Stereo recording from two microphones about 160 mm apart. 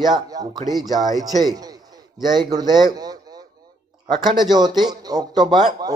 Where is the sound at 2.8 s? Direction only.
25° right (ahead or behind).